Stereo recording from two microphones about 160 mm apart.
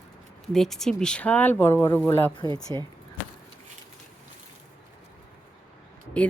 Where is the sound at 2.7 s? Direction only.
30° right (ahead or behind).